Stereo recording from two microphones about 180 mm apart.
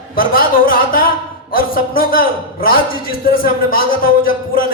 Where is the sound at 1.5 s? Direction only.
55° left (ahead or behind).